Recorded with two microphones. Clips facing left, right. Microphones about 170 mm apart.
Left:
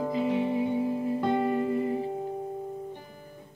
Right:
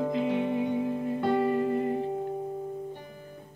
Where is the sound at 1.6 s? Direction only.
50° right (ahead or behind).